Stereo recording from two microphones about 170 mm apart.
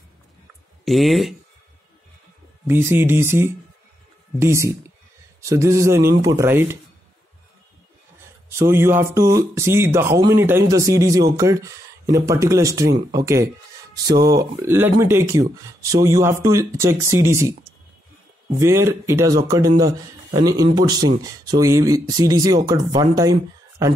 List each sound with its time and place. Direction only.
0.8 s speech: centre (ahead or behind)
2.6 s speech: 15° right (ahead or behind)
8.5 s speech: 15° right (ahead or behind)